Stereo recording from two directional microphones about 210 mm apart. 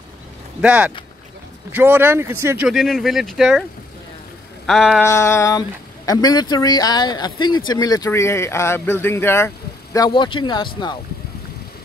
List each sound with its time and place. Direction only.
0.6 s speech: 5° right (ahead or behind)
4.6 s speech: centre (ahead or behind)
5.0 s speech: 10° left (ahead or behind)